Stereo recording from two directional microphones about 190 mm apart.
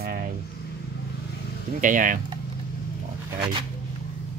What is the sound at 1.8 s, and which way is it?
Speech, 45° right (ahead or behind).